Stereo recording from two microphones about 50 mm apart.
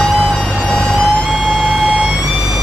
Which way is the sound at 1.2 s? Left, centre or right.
Centre.